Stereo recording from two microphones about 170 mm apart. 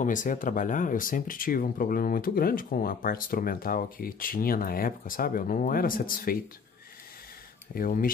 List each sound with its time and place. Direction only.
0.0 s speech: 50° left (ahead or behind)
7.7 s speech: 55° left (ahead or behind)